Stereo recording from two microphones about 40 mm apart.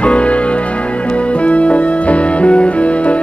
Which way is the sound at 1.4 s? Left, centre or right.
Left.